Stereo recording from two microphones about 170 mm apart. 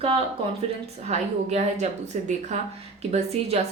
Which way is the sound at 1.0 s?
40° right (ahead or behind).